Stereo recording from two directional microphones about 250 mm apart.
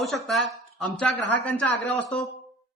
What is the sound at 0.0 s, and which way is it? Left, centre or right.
A man's voice, centre.